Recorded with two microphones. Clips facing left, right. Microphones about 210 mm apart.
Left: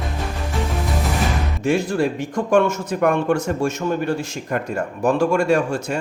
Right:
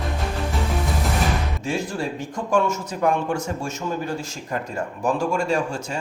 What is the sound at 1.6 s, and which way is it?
A man's voice, 60° left (ahead or behind).